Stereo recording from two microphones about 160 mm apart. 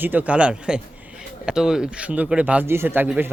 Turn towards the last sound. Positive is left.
turn(degrees=-10)  # may be behind; listen again after turning